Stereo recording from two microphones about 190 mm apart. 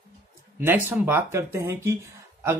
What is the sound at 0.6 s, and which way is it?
Speech, 10° right (ahead or behind).